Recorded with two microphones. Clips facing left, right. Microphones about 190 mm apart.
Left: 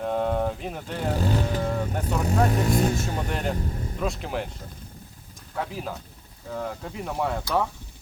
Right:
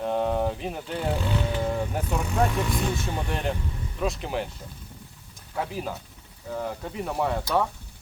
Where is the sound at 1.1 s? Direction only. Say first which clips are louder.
Left 5 dB; 40° left (ahead or behind).